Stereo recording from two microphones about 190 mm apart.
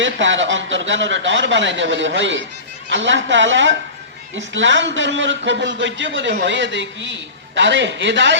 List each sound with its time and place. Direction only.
0.0 s a man's voice: 75° right (ahead or behind)